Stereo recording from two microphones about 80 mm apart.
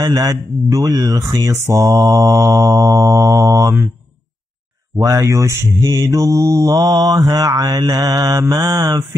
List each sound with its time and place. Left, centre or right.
0.0 s mantra: right
5.0 s speech: right
5.9 s mantra: right